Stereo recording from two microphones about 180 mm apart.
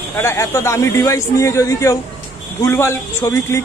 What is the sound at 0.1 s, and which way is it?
Speech, 15° left (ahead or behind).